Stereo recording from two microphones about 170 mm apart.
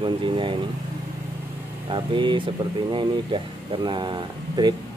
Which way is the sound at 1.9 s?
30° right (ahead or behind).